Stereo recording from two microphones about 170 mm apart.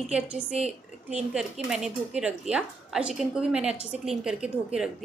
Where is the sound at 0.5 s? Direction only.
40° right (ahead or behind).